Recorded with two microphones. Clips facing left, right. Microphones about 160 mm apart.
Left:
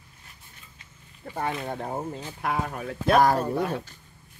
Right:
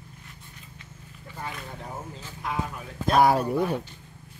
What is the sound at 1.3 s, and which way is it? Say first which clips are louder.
Speech: left 8 dB; 60° left (ahead or behind).